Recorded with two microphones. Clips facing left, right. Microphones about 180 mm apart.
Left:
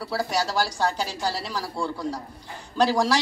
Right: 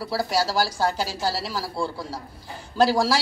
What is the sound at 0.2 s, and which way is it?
Speech, 5° right (ahead or behind).